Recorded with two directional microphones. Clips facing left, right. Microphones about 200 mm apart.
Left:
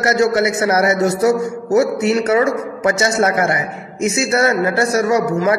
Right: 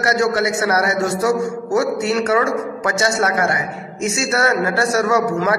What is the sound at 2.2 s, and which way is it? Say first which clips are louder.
Speech: left 2 dB; 20° left (ahead or behind).